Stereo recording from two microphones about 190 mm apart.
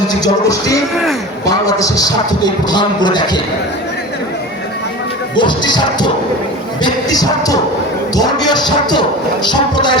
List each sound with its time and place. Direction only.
0.1 s music: 15° left (ahead or behind)
1.5 s speech: 20° left (ahead or behind)
5.4 s speech: 25° left (ahead or behind)